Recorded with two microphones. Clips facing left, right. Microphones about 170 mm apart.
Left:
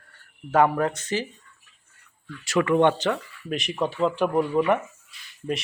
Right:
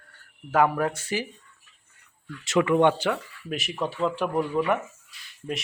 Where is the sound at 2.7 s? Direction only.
5° right (ahead or behind).